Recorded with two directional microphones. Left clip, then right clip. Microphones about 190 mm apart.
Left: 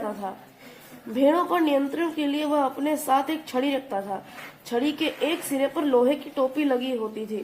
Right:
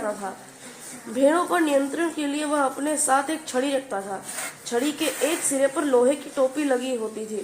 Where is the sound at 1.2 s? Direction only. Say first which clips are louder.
Right 1 dB; 30° left (ahead or behind).